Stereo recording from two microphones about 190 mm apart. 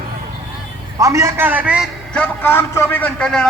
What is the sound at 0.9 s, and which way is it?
Speech, 15° right (ahead or behind).